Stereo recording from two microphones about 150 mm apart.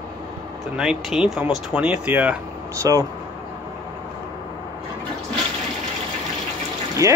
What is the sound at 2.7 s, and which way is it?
Speech, 20° right (ahead or behind).